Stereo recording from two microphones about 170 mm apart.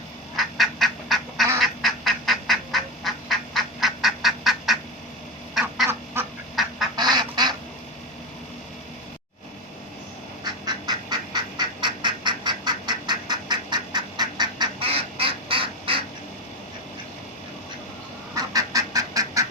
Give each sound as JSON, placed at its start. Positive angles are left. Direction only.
{"t": 0.3, "sound": "duck", "side_deg": 0}
{"t": 6.9, "sound": "duck", "side_deg": -25}
{"t": 10.7, "sound": "duck", "side_deg": -25}
{"t": 18.3, "sound": "duck", "side_deg": -20}